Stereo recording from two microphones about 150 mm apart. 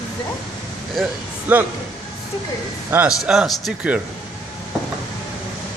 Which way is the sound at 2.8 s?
10° right (ahead or behind).